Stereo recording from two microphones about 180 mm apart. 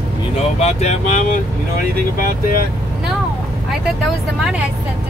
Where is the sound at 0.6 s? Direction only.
40° left (ahead or behind).